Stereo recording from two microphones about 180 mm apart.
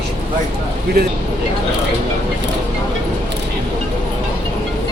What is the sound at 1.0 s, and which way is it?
Speech, 65° right (ahead or behind).